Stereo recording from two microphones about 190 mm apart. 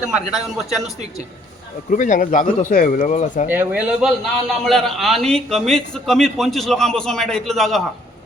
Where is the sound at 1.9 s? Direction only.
40° left (ahead or behind).